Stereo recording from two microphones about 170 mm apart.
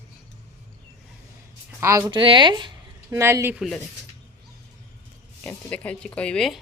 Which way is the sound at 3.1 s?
15° right (ahead or behind).